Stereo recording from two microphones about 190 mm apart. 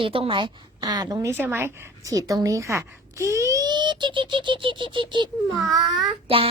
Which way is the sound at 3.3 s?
15° right (ahead or behind).